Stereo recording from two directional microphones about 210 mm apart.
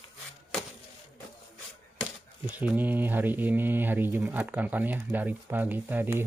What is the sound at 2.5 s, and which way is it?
Speech, 10° right (ahead or behind).